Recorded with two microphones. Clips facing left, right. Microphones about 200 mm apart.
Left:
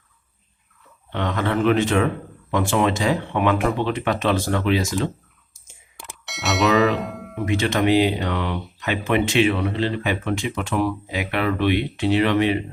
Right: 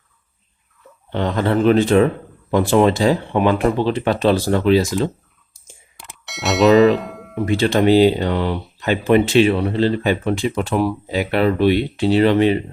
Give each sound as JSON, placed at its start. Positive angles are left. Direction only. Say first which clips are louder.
{"t": 1.1, "sound": "speech", "louder": "right 4 dB", "side_deg": -35}
{"t": 6.0, "sound": "a sound", "louder": "right 4 dB", "side_deg": 0}
{"t": 7.4, "sound": "speech", "louder": "right 5 dB", "side_deg": -35}